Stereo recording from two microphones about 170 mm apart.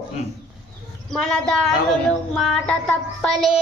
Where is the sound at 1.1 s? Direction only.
5° left (ahead or behind).